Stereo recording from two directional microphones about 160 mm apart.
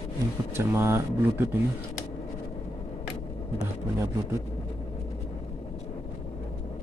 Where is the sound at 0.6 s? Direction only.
15° right (ahead or behind).